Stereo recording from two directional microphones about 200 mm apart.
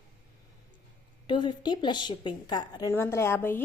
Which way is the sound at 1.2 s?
25° left (ahead or behind).